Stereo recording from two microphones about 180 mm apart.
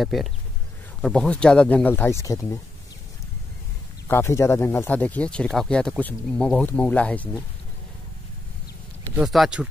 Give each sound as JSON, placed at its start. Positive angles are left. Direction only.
{"t": 0.0, "sound": "speech", "side_deg": 0}
{"t": 4.1, "sound": "speech", "side_deg": 15}
{"t": 9.1, "sound": "speech", "side_deg": 0}